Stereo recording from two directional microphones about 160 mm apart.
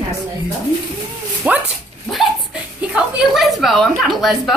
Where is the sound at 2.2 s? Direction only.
Centre (ahead or behind).